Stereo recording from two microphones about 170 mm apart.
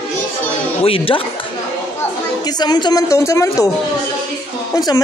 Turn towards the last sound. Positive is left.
turn(degrees=25)  # may be behind; listen again after turning